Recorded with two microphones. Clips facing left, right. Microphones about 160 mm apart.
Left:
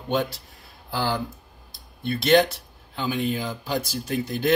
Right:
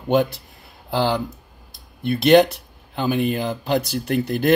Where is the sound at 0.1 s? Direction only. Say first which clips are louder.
Right 6 dB; 55° right (ahead or behind).